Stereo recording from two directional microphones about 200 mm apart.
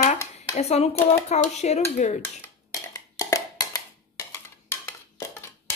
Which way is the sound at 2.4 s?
15° left (ahead or behind).